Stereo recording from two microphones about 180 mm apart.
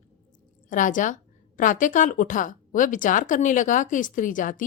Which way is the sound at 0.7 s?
45° left (ahead or behind).